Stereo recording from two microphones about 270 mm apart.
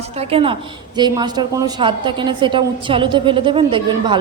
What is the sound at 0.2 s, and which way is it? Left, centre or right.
A woman's voice, right.